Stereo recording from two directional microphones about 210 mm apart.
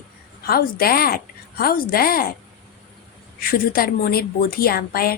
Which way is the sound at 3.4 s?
45° left (ahead or behind).